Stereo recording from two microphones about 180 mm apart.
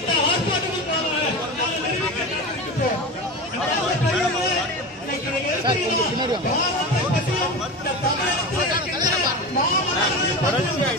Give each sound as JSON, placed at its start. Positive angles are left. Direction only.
{"t": 5.7, "sound": "chatter", "side_deg": -25}